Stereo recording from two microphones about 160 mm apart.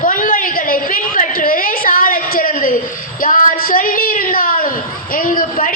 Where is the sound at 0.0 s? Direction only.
60° left (ahead or behind).